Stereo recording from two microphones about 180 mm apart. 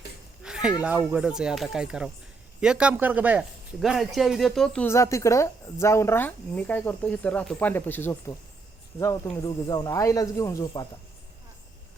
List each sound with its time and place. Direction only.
0.4 s a sound: 5° right (ahead or behind)
1.1 s speech: 5° right (ahead or behind); by 8.4 s 10° left (ahead or behind)
9.3 s speech: 20° left (ahead or behind)